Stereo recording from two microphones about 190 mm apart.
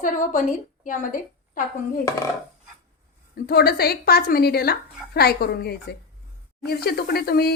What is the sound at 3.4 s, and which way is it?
A woman's voice, 55° left (ahead or behind).